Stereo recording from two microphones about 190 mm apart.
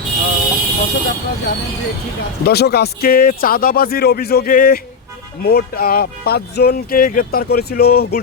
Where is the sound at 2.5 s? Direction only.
55° left (ahead or behind).